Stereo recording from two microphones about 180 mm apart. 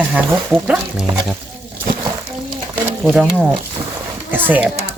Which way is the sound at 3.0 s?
5° right (ahead or behind).